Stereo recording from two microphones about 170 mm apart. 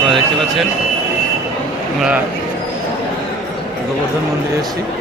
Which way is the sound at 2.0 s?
5° right (ahead or behind).